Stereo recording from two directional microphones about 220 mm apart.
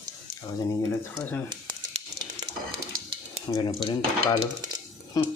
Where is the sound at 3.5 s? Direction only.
20° left (ahead or behind).